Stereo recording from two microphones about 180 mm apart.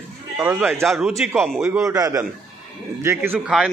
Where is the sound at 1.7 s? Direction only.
15° right (ahead or behind).